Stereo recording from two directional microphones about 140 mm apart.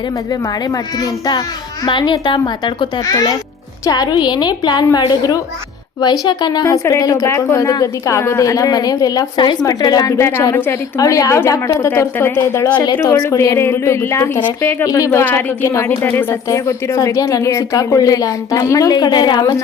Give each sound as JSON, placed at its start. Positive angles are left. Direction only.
{"t": 0.7, "sound": "a child's voice", "side_deg": 30}
{"t": 12.7, "sound": "a child's voice", "side_deg": 35}
{"t": 13.0, "sound": "speech", "side_deg": 20}